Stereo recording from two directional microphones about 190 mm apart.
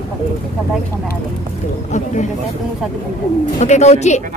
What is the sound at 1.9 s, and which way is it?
Speech, 40° left (ahead or behind).